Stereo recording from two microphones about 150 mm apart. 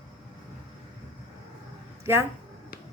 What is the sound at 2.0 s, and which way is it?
Speech, 15° right (ahead or behind).